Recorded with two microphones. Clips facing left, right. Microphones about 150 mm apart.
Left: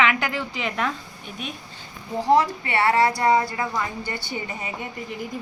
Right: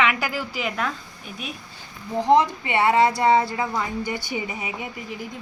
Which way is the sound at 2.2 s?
20° right (ahead or behind).